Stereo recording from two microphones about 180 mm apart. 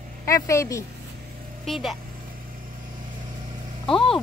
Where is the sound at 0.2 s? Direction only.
15° left (ahead or behind).